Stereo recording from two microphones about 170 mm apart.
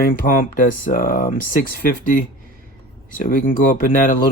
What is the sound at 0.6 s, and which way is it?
Speech, 55° left (ahead or behind).